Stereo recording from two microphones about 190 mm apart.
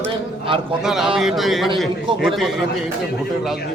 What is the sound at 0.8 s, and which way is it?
A man's voice, 5° right (ahead or behind).